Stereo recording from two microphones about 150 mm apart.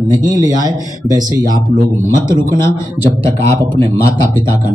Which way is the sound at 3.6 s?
30° right (ahead or behind).